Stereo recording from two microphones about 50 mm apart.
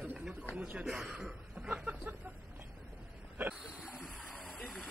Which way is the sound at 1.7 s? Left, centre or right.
Right.